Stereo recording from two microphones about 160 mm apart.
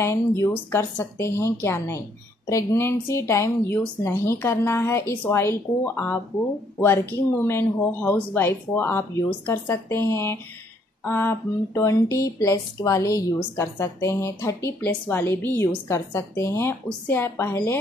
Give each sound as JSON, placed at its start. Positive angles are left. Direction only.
{"t": 0.0, "sound": "speech", "side_deg": 15}